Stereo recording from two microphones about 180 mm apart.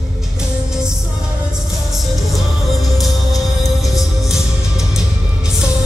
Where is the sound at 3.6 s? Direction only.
20° left (ahead or behind).